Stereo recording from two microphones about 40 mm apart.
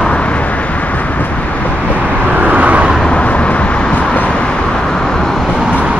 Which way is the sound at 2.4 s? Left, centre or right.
Right.